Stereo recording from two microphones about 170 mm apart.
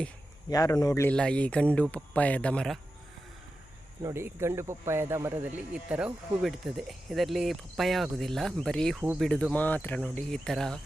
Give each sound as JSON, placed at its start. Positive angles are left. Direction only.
{"t": 0.5, "sound": "speech", "side_deg": 20}
{"t": 1.0, "sound": "speech", "side_deg": 5}
{"t": 4.0, "sound": "speech", "side_deg": -15}